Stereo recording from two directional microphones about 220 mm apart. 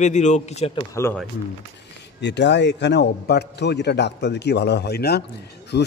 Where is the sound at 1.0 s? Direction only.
10° left (ahead or behind).